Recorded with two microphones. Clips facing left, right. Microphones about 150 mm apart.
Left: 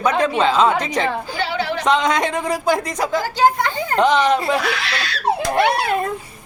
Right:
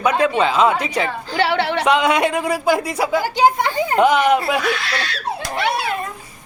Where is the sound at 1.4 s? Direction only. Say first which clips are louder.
Right 7 dB; 70° right (ahead or behind).